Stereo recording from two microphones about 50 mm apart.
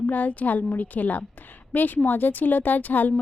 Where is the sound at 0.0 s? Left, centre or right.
Left.